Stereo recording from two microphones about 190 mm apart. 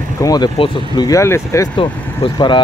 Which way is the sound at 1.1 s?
15° left (ahead or behind).